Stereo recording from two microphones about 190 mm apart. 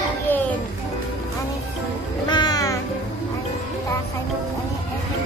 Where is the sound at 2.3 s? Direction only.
20° left (ahead or behind).